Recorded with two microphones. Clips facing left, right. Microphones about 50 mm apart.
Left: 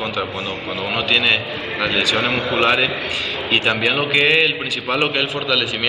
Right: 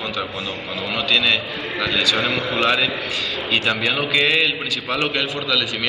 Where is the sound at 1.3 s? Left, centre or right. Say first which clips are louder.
Left 2 dB; left.